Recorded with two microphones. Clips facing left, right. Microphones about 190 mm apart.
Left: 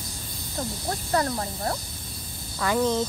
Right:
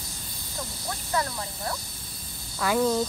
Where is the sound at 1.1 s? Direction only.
40° left (ahead or behind).